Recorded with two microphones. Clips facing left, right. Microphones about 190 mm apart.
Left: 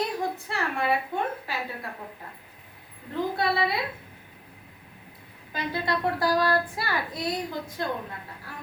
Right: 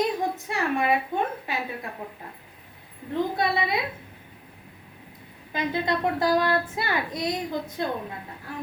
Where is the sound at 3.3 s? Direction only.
20° right (ahead or behind).